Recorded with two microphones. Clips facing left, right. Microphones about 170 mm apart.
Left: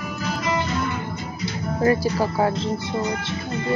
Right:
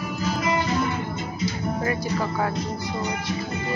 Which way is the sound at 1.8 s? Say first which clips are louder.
Left 9 dB; 35° left (ahead or behind).